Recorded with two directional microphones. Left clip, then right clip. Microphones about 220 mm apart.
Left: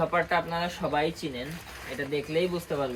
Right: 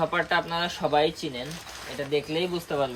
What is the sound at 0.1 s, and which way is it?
Speech, 30° right (ahead or behind).